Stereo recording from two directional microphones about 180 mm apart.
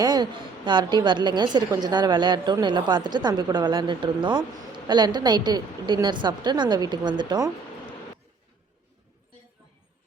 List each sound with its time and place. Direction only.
0.0 s a woman's voice: 25° right (ahead or behind)